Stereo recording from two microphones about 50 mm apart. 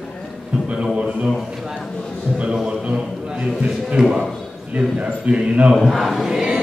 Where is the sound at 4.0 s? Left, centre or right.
Centre.